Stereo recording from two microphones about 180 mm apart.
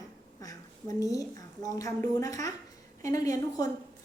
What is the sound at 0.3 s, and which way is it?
A woman's voice, 20° left (ahead or behind).